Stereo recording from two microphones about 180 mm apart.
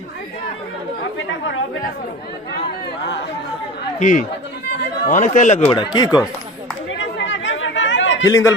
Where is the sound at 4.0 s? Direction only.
45° left (ahead or behind).